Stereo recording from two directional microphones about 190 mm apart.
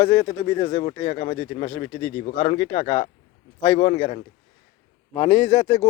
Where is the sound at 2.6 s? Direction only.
25° left (ahead or behind).